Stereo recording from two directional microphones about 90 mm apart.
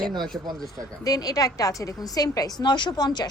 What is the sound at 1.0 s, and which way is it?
A woman's voice, 45° left (ahead or behind).